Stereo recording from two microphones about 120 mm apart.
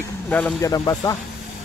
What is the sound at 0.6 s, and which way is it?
Speech, 30° left (ahead or behind).